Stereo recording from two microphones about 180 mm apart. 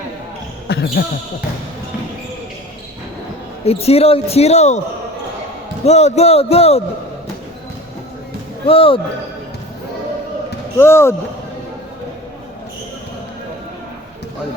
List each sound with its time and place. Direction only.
0.7 s speech: 65° left (ahead or behind)
3.6 s speech: 35° left (ahead or behind)
5.8 s speech: 40° left (ahead or behind)
8.6 s speech: 30° left (ahead or behind)
10.8 s speech: 15° left (ahead or behind)